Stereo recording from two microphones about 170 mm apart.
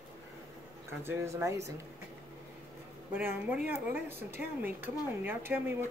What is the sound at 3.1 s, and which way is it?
A woman's voice, 10° right (ahead or behind).